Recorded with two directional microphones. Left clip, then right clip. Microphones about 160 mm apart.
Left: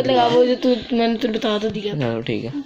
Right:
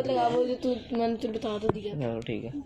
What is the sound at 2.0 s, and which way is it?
Speech, 10° right (ahead or behind).